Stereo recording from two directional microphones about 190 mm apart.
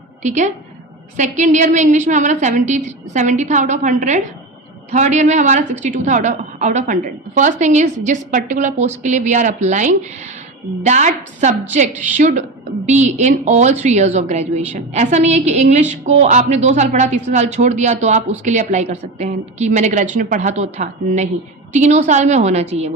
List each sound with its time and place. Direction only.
0.2 s a woman's voice: 40° right (ahead or behind)